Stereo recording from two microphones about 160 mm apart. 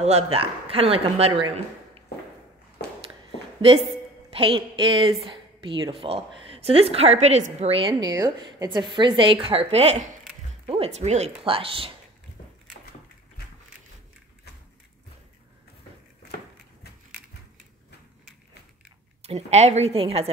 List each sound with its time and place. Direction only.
0.0 s a woman's voice: 40° right (ahead or behind)
2.8 s walk: 90° left
3.6 s a woman's voice: 35° right (ahead or behind)
8.0 s a woman's voice: 25° right (ahead or behind)
19.2 s a woman's voice: 40° right (ahead or behind)